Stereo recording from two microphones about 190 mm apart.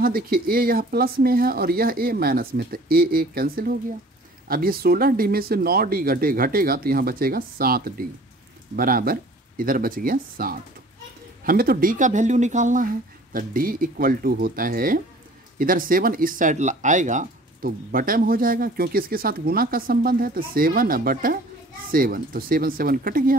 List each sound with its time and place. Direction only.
0.0 s speech: 50° right (ahead or behind)